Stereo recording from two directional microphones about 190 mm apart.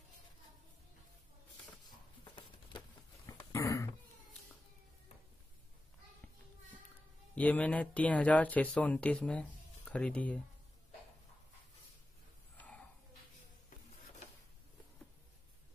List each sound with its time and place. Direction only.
3.3 s dog: 15° left (ahead or behind)
7.3 s speech: 10° left (ahead or behind)
12.5 s a sound: 5° left (ahead or behind)